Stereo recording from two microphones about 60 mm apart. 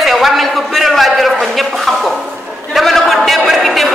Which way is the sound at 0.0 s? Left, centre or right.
Centre.